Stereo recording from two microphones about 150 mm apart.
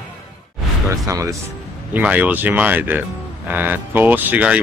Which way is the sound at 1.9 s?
10° right (ahead or behind).